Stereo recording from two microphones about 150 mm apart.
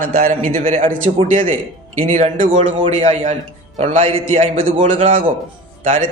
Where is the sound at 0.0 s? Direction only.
60° right (ahead or behind).